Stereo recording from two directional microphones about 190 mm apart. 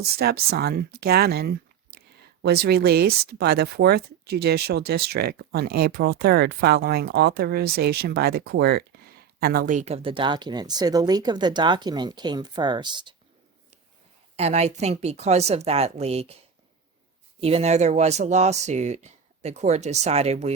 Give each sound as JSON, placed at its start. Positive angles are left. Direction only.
{"t": 0.0, "sound": "speech", "side_deg": -55}
{"t": 14.3, "sound": "speech", "side_deg": -35}
{"t": 17.4, "sound": "speech", "side_deg": -35}